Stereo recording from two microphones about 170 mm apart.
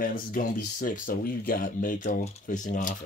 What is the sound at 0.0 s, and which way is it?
Speech, 55° left (ahead or behind).